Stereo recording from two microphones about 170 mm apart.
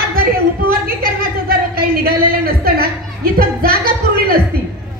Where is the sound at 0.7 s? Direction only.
60° right (ahead or behind).